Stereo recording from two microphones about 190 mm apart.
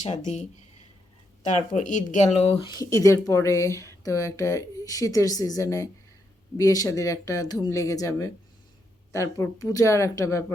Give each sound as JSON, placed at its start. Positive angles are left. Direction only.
{"t": 0.0, "sound": "speech", "side_deg": 40}